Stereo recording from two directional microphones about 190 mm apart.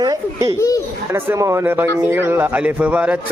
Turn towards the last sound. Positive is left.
turn(degrees=-5)  # may be behind; listen again after turning